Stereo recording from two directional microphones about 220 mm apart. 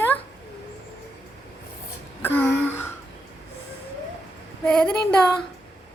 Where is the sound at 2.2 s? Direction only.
10° left (ahead or behind).